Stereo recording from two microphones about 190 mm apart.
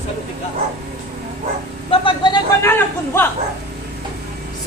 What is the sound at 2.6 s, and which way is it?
Chatter, 10° left (ahead or behind).